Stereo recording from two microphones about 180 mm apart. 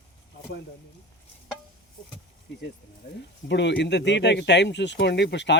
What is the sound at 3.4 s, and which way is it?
Speech, 75° left (ahead or behind).